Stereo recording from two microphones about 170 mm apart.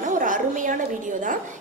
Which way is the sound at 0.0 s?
50° right (ahead or behind).